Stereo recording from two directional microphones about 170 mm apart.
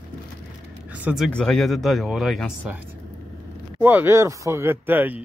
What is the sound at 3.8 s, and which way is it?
Speech, 10° right (ahead or behind).